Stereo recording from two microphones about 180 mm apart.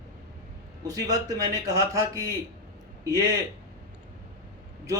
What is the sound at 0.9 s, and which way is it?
A man's voice, 20° right (ahead or behind).